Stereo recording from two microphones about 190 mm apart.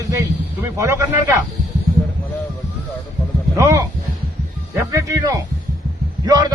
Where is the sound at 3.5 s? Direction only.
15° right (ahead or behind).